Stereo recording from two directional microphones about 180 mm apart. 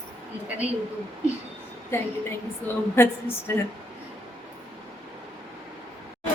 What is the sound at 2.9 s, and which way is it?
Speech, 15° left (ahead or behind).